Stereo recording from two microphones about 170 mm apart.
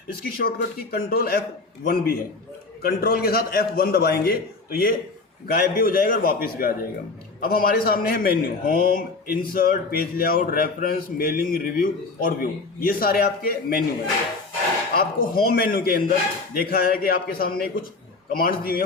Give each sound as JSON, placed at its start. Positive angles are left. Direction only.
{"t": 0.1, "sound": "a man's voice", "side_deg": 60}
{"t": 14.9, "sound": "a man's voice", "side_deg": 60}